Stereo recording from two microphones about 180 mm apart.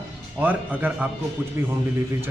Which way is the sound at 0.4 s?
10° right (ahead or behind).